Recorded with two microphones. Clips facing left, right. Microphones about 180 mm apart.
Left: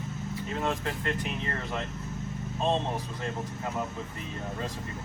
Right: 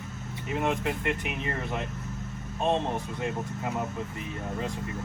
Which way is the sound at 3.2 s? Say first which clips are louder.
Right 2 dB; 15° right (ahead or behind).